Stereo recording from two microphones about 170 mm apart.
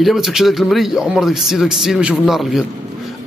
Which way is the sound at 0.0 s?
Centre (ahead or behind).